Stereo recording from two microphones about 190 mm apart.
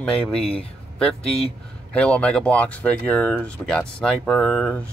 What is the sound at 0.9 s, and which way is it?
Speech, 5° left (ahead or behind).